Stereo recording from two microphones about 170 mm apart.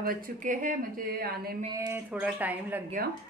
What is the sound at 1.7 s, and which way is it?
Speech, 15° right (ahead or behind).